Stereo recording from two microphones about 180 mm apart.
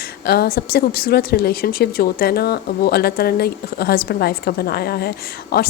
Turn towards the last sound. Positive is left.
turn(degrees=60)  # may be behind; listen again after turning